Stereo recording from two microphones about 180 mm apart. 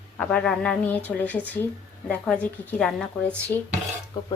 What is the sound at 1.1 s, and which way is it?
A woman's voice, 10° left (ahead or behind).